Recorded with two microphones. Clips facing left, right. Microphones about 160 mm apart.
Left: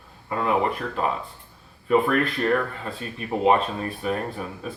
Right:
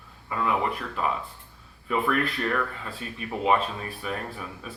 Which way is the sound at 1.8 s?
40° left (ahead or behind).